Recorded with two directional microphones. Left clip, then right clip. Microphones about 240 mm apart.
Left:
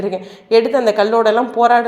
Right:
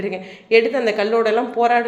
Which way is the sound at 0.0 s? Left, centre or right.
Centre.